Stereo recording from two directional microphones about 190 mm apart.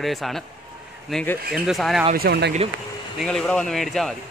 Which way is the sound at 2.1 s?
55° right (ahead or behind).